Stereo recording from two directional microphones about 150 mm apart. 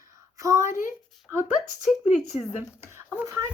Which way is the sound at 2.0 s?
50° left (ahead or behind).